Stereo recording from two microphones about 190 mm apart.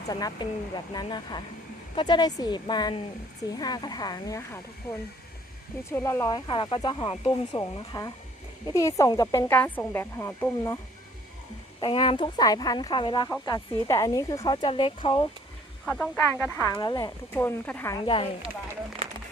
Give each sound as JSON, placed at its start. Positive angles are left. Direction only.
{"t": 0.1, "sound": "a woman's voice", "side_deg": 20}
{"t": 11.8, "sound": "a woman's voice", "side_deg": 25}
{"t": 15.9, "sound": "speech", "side_deg": 5}
{"t": 18.0, "sound": "a woman's voice", "side_deg": 25}